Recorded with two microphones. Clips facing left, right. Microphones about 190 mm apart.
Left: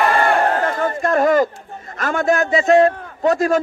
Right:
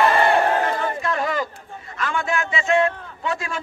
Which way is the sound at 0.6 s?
50° left (ahead or behind).